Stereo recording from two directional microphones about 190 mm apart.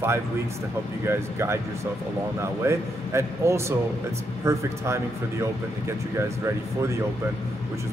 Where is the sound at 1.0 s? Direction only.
15° right (ahead or behind).